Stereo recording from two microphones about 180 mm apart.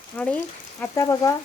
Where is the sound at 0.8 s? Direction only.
20° left (ahead or behind).